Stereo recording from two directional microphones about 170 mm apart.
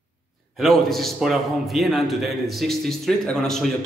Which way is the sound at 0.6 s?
Centre (ahead or behind).